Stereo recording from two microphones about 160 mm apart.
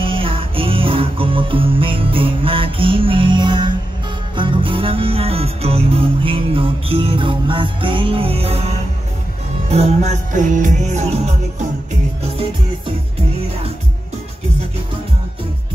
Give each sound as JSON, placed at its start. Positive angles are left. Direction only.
{"t": 0.0, "sound": "music", "side_deg": -35}